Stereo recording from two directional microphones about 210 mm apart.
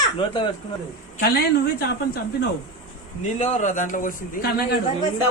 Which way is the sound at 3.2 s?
35° left (ahead or behind).